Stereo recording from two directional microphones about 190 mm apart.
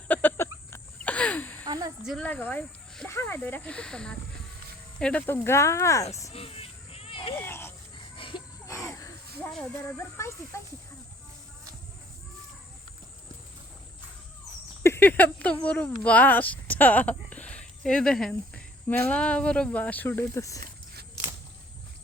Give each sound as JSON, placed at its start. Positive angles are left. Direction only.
{"t": 0.1, "sound": "a sound", "side_deg": 10}
{"t": 1.6, "sound": "a sound", "side_deg": -20}
{"t": 2.0, "sound": "speech", "side_deg": 5}
{"t": 6.3, "sound": "insect", "side_deg": 30}
{"t": 7.3, "sound": "speech", "side_deg": 10}
{"t": 7.9, "sound": "a sound", "side_deg": 25}
{"t": 9.4, "sound": "speech", "side_deg": 5}
{"t": 9.8, "sound": "speech", "side_deg": 15}
{"t": 14.8, "sound": "speech", "side_deg": 10}